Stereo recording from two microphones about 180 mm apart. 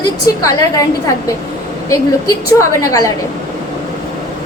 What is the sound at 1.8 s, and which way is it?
A woman's voice, 15° left (ahead or behind).